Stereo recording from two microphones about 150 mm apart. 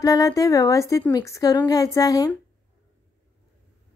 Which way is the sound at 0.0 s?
20° left (ahead or behind).